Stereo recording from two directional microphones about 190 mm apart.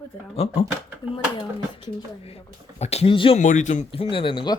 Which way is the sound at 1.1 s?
25° left (ahead or behind).